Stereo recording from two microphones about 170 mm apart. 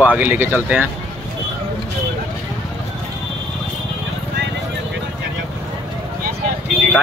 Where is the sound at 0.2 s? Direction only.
10° right (ahead or behind).